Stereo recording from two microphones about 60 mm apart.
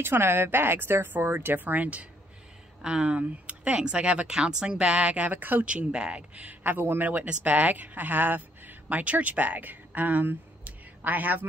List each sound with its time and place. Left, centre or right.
0.0 s speech: right
2.8 s speech: centre; by 5.7 s right
5.7 s speech: centre